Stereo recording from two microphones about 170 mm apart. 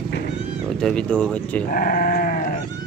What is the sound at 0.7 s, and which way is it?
Speech, 5° left (ahead or behind).